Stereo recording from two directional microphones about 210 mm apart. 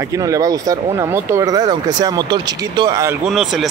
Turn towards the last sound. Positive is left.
turn(degrees=0)  # may be behind; listen again after turning